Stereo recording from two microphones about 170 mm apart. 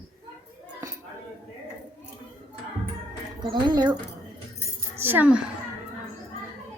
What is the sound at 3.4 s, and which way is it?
Speech, 25° right (ahead or behind).